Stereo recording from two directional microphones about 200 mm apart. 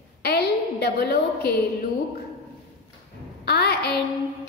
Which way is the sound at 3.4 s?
55° left (ahead or behind).